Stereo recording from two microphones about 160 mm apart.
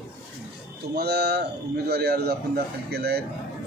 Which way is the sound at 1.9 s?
80° right.